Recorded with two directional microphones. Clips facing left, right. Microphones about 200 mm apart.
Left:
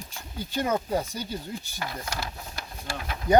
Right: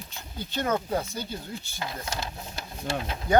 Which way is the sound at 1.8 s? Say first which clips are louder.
Right 1 dB; 20° right (ahead or behind).